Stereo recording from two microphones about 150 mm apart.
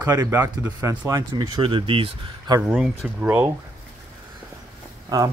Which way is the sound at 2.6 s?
5° right (ahead or behind).